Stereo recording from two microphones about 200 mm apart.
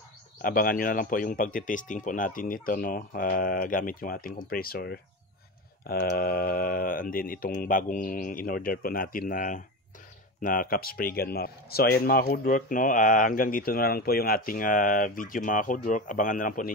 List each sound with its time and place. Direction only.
0.4 s speech: 45° left (ahead or behind)